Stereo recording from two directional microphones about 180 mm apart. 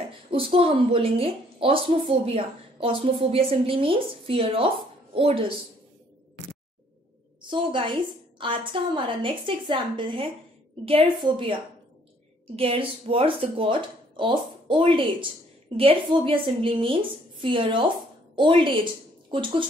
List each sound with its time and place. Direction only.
0.3 s a woman's voice: 30° right (ahead or behind)
7.4 s a woman's voice: 30° right (ahead or behind)
12.5 s a woman's voice: 30° right (ahead or behind)